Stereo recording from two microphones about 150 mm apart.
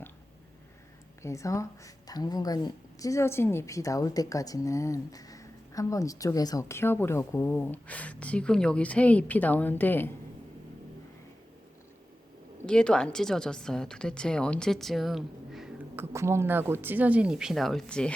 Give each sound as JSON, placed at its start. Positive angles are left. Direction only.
{"t": 1.2, "sound": "a woman's voice", "side_deg": 20}
{"t": 12.6, "sound": "a woman's voice", "side_deg": 5}
{"t": 16.0, "sound": "speech", "side_deg": -15}